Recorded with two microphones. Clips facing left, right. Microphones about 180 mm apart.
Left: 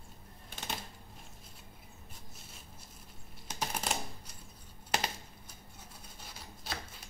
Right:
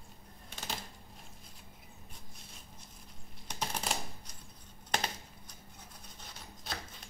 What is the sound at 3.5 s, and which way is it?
Typing, 5° left (ahead or behind).